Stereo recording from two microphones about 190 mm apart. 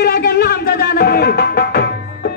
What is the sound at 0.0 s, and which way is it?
Music, 55° left (ahead or behind).